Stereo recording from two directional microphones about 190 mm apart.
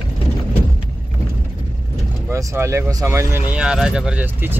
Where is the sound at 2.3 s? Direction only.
15° right (ahead or behind).